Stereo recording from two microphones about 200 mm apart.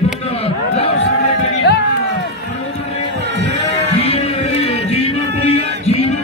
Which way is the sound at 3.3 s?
60° right (ahead or behind).